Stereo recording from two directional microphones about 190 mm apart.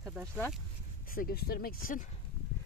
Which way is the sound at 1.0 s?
50° left (ahead or behind).